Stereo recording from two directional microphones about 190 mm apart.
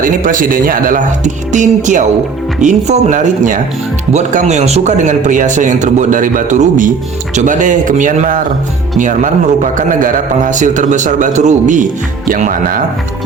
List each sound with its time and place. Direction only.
0.0 s speech: 45° right (ahead or behind)